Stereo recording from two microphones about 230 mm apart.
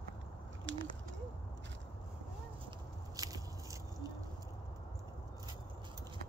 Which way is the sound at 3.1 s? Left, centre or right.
Centre.